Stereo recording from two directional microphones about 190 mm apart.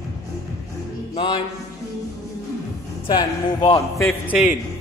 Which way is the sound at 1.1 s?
25° left (ahead or behind).